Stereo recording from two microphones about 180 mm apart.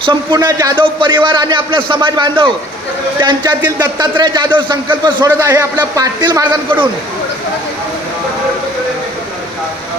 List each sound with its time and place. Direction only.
0.0 s a man's voice: 25° right (ahead or behind)
5.3 s a man's voice: 15° right (ahead or behind)